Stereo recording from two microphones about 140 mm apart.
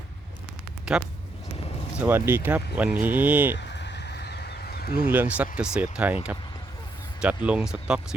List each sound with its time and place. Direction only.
0.9 s speech: 5° right (ahead or behind)
4.6 s a sound: 90° left
5.0 s speech: 15° right (ahead or behind)
7.2 s speech: 10° right (ahead or behind)